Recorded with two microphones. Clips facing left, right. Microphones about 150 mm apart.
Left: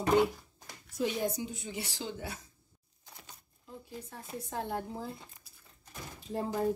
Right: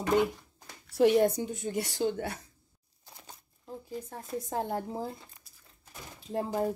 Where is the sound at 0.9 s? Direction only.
65° right (ahead or behind).